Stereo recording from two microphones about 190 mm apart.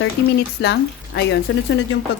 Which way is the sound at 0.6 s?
60° left (ahead or behind).